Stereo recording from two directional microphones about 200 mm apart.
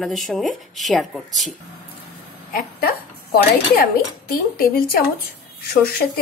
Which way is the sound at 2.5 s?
50° left (ahead or behind).